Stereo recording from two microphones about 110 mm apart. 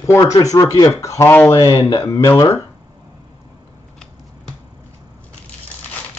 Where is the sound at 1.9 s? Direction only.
30° left (ahead or behind).